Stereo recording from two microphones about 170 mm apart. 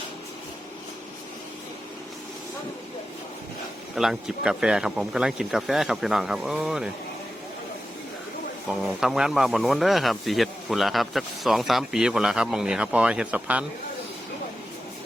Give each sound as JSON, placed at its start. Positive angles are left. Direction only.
{"t": 3.9, "sound": "speech", "side_deg": 0}
{"t": 8.9, "sound": "speech", "side_deg": -5}